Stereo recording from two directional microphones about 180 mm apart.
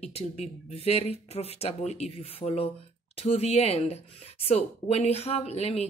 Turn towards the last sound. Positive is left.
turn(degrees=35)  # may be behind; listen again after turning